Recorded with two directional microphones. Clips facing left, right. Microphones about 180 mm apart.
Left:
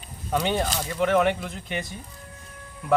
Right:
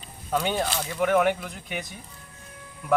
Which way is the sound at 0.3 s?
Centre (ahead or behind).